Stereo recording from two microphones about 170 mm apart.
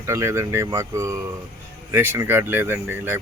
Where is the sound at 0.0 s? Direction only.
15° right (ahead or behind).